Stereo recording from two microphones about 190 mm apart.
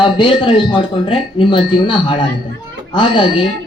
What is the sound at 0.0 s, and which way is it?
Speech, 25° left (ahead or behind).